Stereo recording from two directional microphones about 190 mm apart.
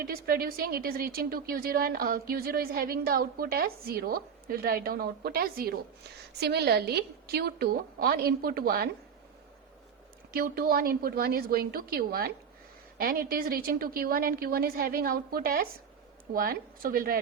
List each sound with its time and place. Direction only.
0.0 s a woman's voice: 50° right (ahead or behind)
10.3 s a woman's voice: 50° right (ahead or behind)